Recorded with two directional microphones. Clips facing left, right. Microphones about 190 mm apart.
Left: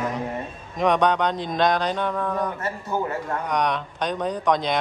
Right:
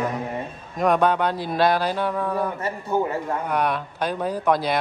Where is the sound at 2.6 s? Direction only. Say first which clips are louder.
Right 3 dB; 15° right (ahead or behind).